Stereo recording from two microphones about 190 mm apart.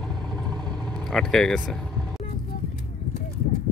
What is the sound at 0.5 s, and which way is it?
Vehicle, 25° right (ahead or behind).